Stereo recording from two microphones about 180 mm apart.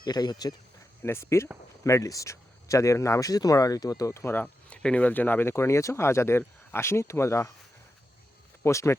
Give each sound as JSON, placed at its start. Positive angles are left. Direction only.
{"t": 0.0, "sound": "speech", "side_deg": 20}
{"t": 8.6, "sound": "speech", "side_deg": 15}